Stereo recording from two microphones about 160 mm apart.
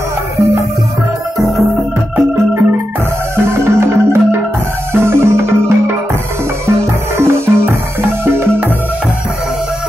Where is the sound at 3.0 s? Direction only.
15° right (ahead or behind).